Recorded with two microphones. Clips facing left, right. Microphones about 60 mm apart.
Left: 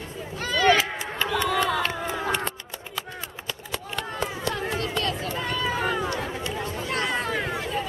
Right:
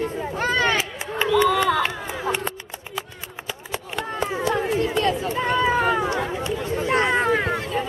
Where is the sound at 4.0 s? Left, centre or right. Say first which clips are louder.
Right 6 dB; centre; by 6.0 s right.